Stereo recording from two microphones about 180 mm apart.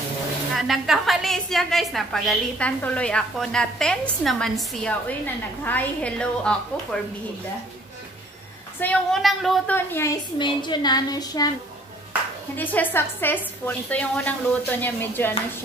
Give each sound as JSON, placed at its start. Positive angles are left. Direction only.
{"t": 0.6, "sound": "a woman's voice", "side_deg": 0}
{"t": 8.7, "sound": "a woman's voice", "side_deg": 5}
{"t": 9.8, "sound": "a woman's voice", "side_deg": 15}
{"t": 10.4, "sound": "a woman's voice", "side_deg": 25}
{"t": 12.5, "sound": "a woman's voice", "side_deg": 10}